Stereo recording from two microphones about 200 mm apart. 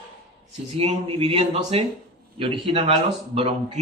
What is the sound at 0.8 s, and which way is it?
A man's voice, 30° right (ahead or behind).